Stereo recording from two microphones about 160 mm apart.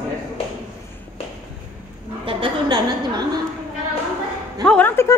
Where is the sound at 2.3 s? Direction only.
30° right (ahead or behind).